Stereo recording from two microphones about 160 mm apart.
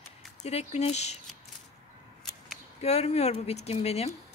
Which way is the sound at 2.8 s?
40° left (ahead or behind).